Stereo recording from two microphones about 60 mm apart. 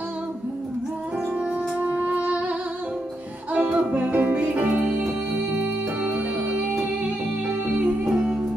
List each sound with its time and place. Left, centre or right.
1.4 s music: right
3.5 s music: right
7.6 s music: right
8.0 s music: centre